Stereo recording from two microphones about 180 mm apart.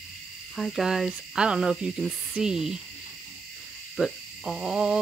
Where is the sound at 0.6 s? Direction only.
Centre (ahead or behind).